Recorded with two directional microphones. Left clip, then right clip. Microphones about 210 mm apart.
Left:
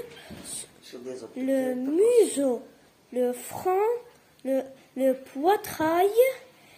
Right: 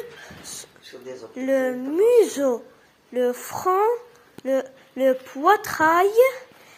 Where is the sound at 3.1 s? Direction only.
Centre (ahead or behind).